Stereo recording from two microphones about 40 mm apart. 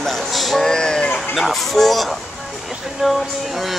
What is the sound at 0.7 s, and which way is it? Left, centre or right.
Speech, centre.